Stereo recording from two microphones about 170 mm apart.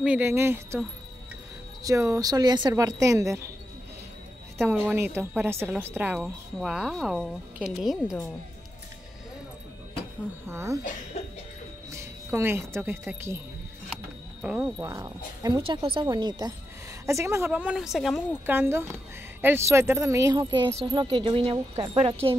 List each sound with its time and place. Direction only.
0.0 s speech: 10° right (ahead or behind)
1.8 s speech: 20° right (ahead or behind)
4.6 s a woman's voice: 10° right (ahead or behind)
10.5 s speech: 15° right (ahead or behind)
12.3 s speech: 15° right (ahead or behind)
14.4 s a woman's voice: 5° right (ahead or behind)
14.9 s speech: 20° right (ahead or behind); by 18.2 s centre (ahead or behind)
18.4 s speech: 10° right (ahead or behind); by 22.1 s 35° right (ahead or behind)